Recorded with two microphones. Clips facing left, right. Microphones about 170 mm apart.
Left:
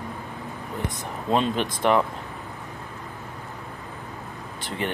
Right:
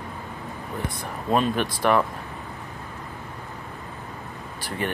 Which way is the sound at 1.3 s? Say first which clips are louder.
Right 1 dB; 20° left (ahead or behind).